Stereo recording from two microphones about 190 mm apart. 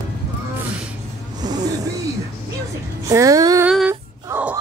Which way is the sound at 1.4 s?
20° right (ahead or behind).